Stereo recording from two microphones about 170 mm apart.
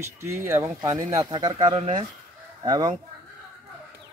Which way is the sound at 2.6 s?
25° right (ahead or behind).